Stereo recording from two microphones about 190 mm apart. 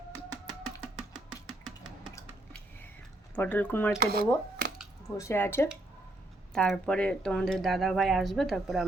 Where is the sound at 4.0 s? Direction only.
55° right (ahead or behind).